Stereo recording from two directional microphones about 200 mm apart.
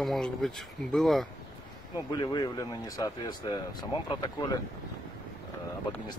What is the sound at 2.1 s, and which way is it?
Speech, 20° left (ahead or behind).